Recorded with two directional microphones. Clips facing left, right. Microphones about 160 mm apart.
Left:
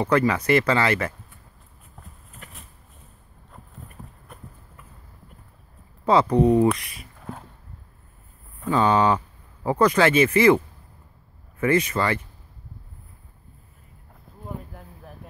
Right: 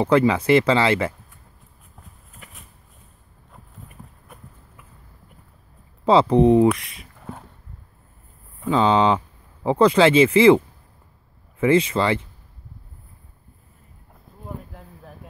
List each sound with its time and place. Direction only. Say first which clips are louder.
0.0 s speech: right 3 dB; 25° right (ahead or behind)
2.3 s a sound: left 1 dB; 5° right (ahead or behind)
3.9 s clip-clop: left 1 dB; 5° right (ahead or behind)
6.0 s speech: right 3 dB; 25° right (ahead or behind)
8.6 s speech: right 2 dB; 20° right (ahead or behind)
11.6 s speech: right 3 dB; 25° right (ahead or behind)